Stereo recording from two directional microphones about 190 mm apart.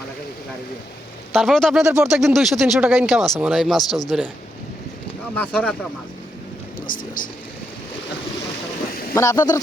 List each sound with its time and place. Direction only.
1.3 s speech: centre (ahead or behind)
5.3 s speech: 10° left (ahead or behind)
6.7 s speech: 45° left (ahead or behind)
9.1 s speech: 15° left (ahead or behind)